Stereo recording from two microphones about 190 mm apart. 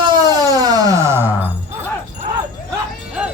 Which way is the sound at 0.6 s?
20° right (ahead or behind).